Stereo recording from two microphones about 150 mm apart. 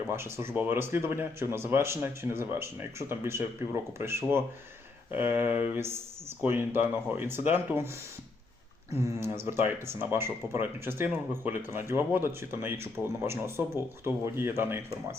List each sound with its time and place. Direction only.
0.1 s speech: 15° right (ahead or behind)
8.9 s speech: 20° right (ahead or behind)